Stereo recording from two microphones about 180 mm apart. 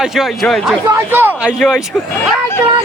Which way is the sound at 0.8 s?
10° right (ahead or behind).